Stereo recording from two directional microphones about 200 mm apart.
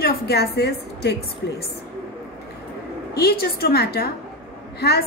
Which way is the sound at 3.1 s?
50° left (ahead or behind).